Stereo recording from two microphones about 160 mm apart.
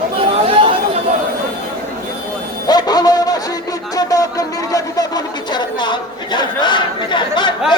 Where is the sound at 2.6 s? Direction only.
25° left (ahead or behind).